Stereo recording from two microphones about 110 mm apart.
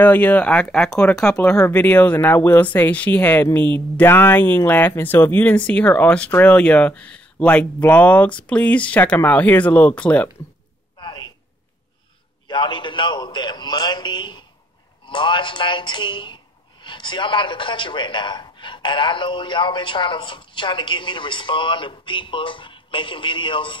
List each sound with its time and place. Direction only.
0.0 s speech: 15° left (ahead or behind)
11.0 s a sound: 45° left (ahead or behind)
12.4 s a man's voice: 45° left (ahead or behind)